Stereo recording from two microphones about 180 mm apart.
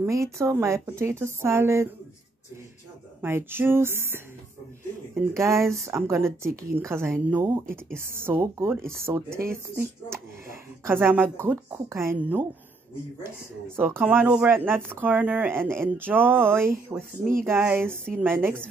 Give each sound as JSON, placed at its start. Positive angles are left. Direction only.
{"t": 0.0, "sound": "speech", "side_deg": -15}
{"t": 3.2, "sound": "speech", "side_deg": -15}
{"t": 10.9, "sound": "speech", "side_deg": -10}
{"t": 13.7, "sound": "speech", "side_deg": -10}